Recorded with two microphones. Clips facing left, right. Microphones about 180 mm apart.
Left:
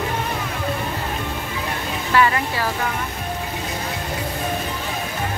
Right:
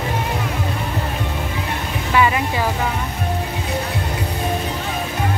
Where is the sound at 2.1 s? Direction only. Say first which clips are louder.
Right 1 dB; 15° right (ahead or behind).